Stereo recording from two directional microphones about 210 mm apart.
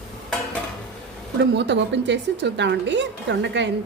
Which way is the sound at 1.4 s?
55° right (ahead or behind).